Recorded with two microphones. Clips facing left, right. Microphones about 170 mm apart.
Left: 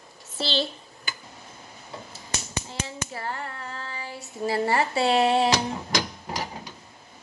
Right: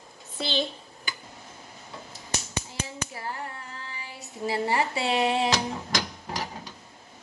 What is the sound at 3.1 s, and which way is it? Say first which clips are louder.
Hands: left 4 dB; 70° left (ahead or behind).